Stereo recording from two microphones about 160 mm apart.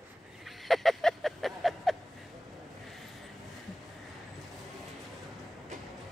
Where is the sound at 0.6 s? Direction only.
Centre (ahead or behind).